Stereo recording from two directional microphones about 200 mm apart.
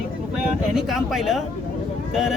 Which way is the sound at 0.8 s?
Centre (ahead or behind).